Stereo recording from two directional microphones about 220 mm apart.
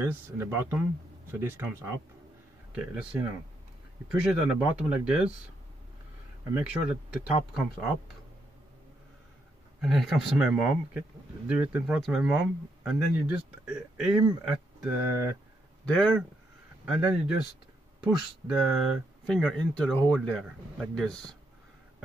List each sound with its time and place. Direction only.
0.0 s speech: 10° right (ahead or behind)
6.5 s speech: centre (ahead or behind)
9.8 s speech: centre (ahead or behind)
15.8 s speech: 5° left (ahead or behind)